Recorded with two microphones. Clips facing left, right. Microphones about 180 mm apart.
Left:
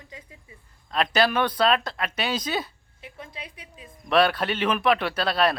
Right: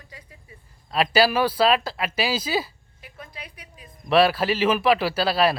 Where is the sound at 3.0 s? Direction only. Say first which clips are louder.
Left 1 dB; 25° left (ahead or behind).